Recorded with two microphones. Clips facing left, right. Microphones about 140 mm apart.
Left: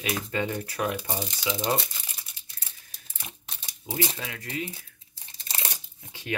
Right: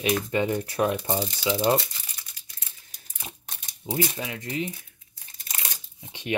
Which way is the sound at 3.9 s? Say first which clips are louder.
Right 3 dB; 20° right (ahead or behind).